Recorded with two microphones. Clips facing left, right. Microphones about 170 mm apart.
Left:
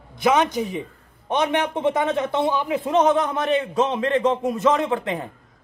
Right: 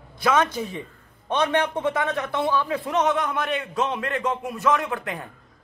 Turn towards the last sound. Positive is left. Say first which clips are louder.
# left 6 dB
turn(degrees=25)  # may be behind; listen again after turning